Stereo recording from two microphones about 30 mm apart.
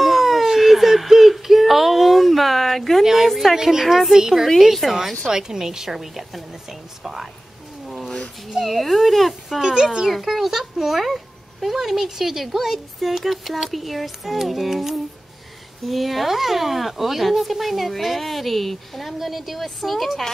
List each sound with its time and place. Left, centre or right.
0.0 s a sound: centre
3.5 s a child's voice: centre
5.3 s a child's voice: centre
7.8 s a sound: centre
8.6 s speech: centre
9.6 s speech: centre
10.0 s a child's voice: centre
19.1 s a child's voice: centre